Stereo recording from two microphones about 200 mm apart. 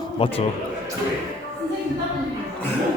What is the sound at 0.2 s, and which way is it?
Speech, 25° left (ahead or behind).